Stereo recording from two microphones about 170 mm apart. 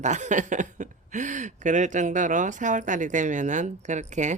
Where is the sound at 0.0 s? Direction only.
45° right (ahead or behind).